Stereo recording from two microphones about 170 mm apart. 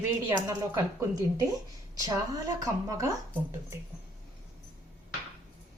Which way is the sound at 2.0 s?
20° right (ahead or behind).